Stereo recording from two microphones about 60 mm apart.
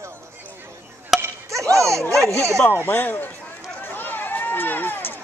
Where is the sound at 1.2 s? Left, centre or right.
Right.